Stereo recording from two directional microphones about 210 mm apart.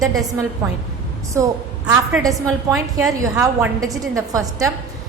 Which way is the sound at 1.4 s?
15° right (ahead or behind).